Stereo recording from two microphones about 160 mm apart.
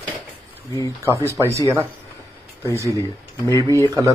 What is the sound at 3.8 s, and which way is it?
Speech, 20° right (ahead or behind).